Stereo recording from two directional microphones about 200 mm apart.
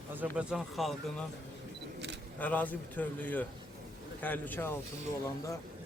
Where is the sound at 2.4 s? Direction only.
10° left (ahead or behind).